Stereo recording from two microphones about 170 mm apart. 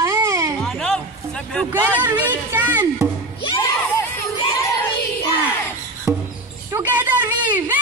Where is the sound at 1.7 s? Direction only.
10° right (ahead or behind).